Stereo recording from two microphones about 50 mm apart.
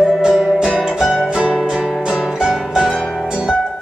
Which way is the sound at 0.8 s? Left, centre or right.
Centre.